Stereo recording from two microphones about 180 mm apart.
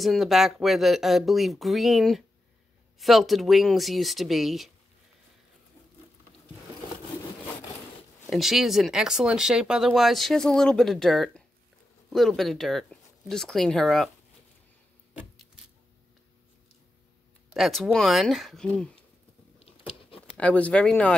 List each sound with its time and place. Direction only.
0.0 s speech: centre (ahead or behind)
8.3 s speech: centre (ahead or behind)
15.1 s vehicle: 5° right (ahead or behind)
17.6 s speech: centre (ahead or behind)
19.6 s patter: 30° left (ahead or behind)
20.3 s speech: 5° left (ahead or behind)